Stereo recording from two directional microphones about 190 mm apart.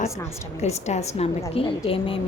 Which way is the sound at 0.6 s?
35° left (ahead or behind).